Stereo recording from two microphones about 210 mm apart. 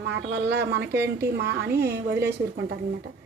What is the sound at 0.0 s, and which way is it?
A woman's voice, 55° right (ahead or behind).